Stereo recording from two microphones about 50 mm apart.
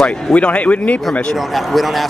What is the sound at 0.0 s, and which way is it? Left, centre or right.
Speech, left.